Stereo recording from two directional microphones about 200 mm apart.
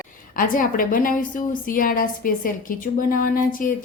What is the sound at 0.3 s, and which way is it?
A woman's voice, 45° left (ahead or behind).